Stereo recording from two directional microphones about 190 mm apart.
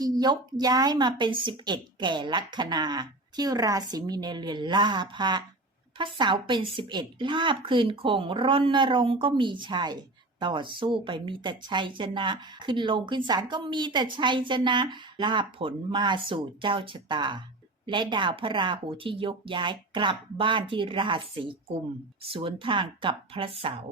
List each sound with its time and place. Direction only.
0.0 s speech: 20° right (ahead or behind)